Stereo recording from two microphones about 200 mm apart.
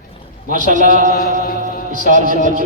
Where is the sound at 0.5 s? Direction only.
40° right (ahead or behind).